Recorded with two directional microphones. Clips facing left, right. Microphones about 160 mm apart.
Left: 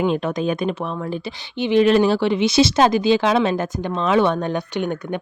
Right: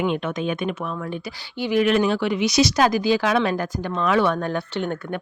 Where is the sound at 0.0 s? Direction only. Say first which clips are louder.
Left 3 dB; 35° left (ahead or behind).